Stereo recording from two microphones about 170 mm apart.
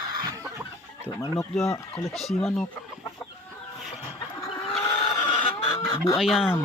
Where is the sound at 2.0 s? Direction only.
Centre (ahead or behind).